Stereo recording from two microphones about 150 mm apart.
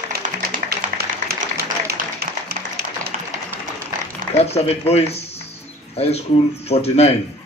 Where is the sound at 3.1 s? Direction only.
55° right (ahead or behind).